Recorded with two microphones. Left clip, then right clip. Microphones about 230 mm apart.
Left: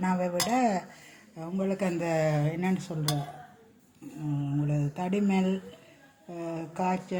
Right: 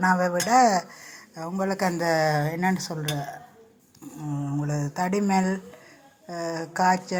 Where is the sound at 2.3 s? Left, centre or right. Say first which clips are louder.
Right 6 dB; right.